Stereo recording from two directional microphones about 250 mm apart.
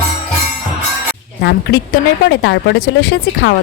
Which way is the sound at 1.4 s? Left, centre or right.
Left.